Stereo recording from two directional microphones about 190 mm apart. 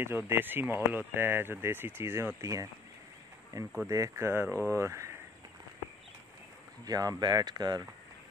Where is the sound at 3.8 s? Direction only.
15° right (ahead or behind).